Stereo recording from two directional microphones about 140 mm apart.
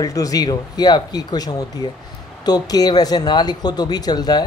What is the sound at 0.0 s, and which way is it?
Speech, 25° left (ahead or behind).